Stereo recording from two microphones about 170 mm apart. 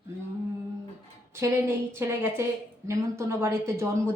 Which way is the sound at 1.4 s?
15° right (ahead or behind).